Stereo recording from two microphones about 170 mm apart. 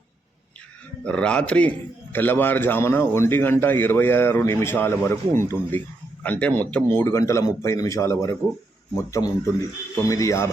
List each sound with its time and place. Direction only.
1.0 s a man's voice: 5° left (ahead or behind)